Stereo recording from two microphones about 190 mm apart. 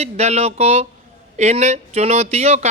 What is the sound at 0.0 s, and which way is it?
A woman's voice, 35° right (ahead or behind).